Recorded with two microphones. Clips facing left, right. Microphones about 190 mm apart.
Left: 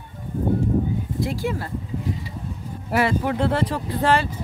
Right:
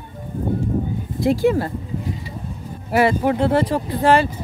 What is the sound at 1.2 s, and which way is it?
Speech, 20° right (ahead or behind).